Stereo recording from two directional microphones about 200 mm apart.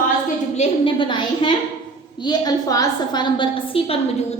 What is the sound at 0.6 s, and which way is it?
A woman's voice, 25° left (ahead or behind).